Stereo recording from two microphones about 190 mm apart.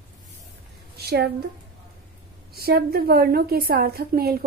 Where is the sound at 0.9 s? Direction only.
60° right (ahead or behind).